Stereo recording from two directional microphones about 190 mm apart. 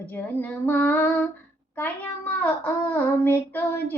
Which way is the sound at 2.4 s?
10° left (ahead or behind).